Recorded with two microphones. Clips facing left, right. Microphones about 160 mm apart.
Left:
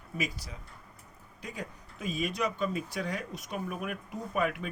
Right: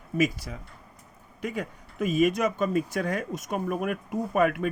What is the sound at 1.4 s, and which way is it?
Speech, 60° right (ahead or behind).